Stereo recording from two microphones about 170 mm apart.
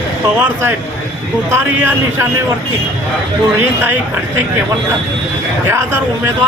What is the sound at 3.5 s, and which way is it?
Speech, 10° right (ahead or behind).